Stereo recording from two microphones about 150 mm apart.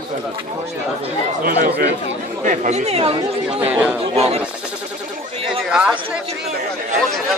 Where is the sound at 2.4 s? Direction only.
60° right (ahead or behind); by 3.1 s 45° right (ahead or behind).